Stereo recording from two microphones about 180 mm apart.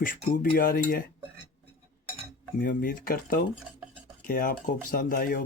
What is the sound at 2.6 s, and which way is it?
Speech, 50° left (ahead or behind).